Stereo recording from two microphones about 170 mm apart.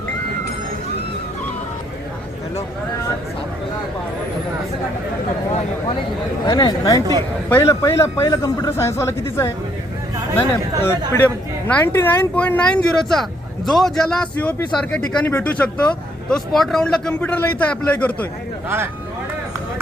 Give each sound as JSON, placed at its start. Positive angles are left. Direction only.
{"t": 6.4, "sound": "a man's voice", "side_deg": 25}